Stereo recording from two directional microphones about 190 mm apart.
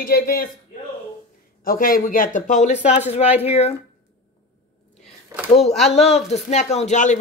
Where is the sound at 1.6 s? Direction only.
45° left (ahead or behind).